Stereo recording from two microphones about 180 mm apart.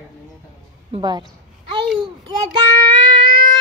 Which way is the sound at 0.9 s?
25° right (ahead or behind).